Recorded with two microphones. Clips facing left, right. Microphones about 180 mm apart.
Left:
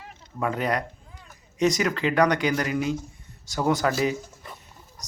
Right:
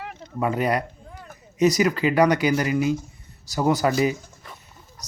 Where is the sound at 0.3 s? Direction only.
5° right (ahead or behind).